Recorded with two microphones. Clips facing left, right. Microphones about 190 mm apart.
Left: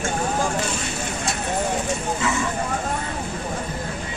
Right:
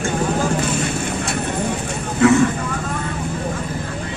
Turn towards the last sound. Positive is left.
turn(degrees=-60)  # may be behind; listen again after turning